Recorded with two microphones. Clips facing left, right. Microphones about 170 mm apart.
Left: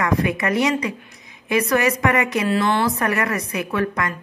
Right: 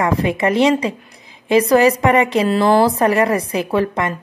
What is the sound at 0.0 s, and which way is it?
A woman's voice, 30° right (ahead or behind).